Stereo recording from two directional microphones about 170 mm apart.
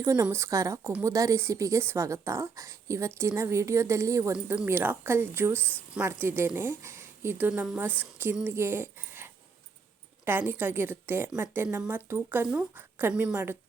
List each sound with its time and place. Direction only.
0.0 s a woman's voice: 20° right (ahead or behind)